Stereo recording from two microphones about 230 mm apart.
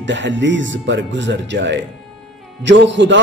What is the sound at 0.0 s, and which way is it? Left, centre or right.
A man's voice, right.